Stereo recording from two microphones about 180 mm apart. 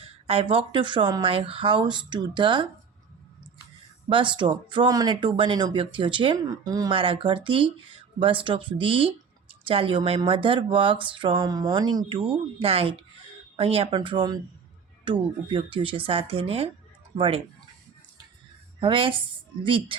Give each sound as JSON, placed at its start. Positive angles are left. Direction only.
{"t": 0.0, "sound": "speech", "side_deg": -30}
{"t": 4.1, "sound": "speech", "side_deg": -25}
{"t": 18.8, "sound": "speech", "side_deg": -30}